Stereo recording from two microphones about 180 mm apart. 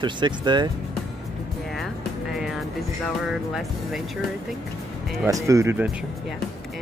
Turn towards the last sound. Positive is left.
turn(degrees=-15)  # may be behind; listen again after turning